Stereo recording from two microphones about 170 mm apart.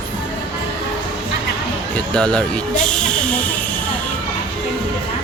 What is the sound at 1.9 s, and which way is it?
Speech, 5° left (ahead or behind).